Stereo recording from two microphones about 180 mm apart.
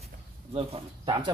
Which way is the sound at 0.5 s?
30° right (ahead or behind).